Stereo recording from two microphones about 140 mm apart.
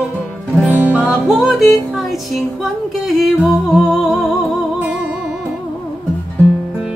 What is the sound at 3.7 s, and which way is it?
Music, centre (ahead or behind).